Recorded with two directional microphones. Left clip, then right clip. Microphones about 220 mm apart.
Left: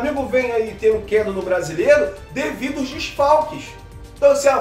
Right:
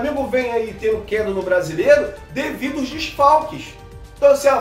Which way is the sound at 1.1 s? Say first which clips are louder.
Even; 5° left (ahead or behind).